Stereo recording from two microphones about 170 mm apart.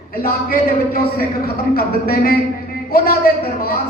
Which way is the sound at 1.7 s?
60° left (ahead or behind).